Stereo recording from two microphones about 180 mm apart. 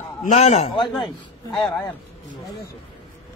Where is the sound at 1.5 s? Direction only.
5° left (ahead or behind).